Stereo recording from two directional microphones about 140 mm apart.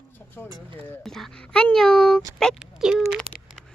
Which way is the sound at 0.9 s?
5° left (ahead or behind).